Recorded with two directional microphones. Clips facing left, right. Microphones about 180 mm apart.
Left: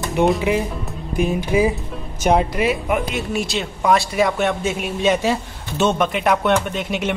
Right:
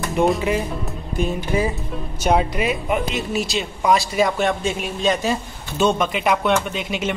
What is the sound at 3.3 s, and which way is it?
Speech, 55° left (ahead or behind).